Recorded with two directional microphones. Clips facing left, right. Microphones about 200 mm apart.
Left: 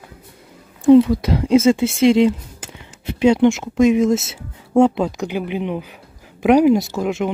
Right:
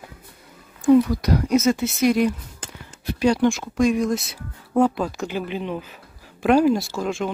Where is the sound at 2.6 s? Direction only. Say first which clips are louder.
Right 1 dB; 10° left (ahead or behind).